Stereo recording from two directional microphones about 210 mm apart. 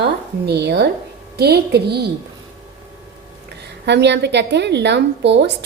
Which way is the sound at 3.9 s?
55° right (ahead or behind).